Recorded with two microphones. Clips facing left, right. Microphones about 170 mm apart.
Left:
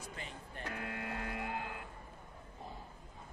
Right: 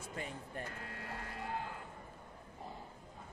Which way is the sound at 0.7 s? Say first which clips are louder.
Left 5 dB; 80° left.